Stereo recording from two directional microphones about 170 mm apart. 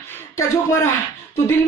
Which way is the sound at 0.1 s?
15° left (ahead or behind).